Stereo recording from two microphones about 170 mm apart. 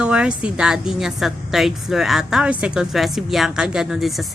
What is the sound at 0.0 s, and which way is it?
A woman's voice, 5° right (ahead or behind).